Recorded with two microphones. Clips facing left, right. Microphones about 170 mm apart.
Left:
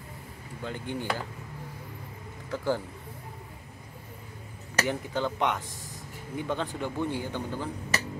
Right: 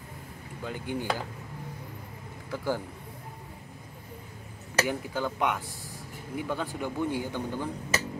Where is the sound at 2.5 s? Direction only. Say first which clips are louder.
Left 2 dB; 10° right (ahead or behind).